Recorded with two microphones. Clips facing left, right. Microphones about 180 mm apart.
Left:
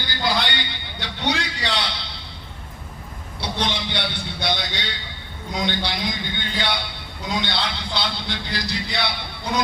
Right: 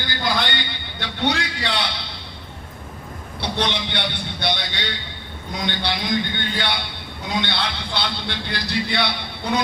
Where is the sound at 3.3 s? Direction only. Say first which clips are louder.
Right 2 dB; 55° right (ahead or behind).